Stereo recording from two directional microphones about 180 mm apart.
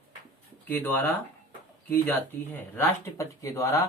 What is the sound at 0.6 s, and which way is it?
Speech, 10° left (ahead or behind).